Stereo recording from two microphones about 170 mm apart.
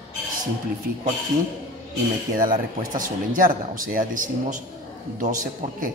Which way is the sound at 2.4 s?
55° right (ahead or behind).